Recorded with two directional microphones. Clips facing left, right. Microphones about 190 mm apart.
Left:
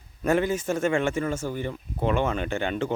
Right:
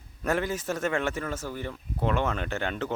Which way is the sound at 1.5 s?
20° left (ahead or behind).